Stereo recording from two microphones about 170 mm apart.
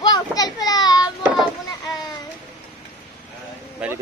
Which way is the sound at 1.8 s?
20° left (ahead or behind).